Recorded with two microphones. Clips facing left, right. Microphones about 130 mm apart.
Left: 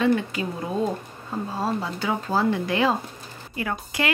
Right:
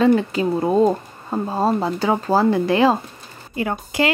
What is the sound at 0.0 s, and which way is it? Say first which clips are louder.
A woman's voice: right 6 dB; 35° right (ahead or behind).